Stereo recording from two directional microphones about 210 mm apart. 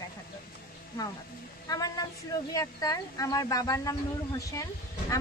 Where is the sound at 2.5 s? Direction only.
15° left (ahead or behind).